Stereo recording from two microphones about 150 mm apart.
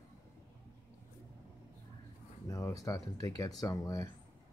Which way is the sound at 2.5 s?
20° left (ahead or behind).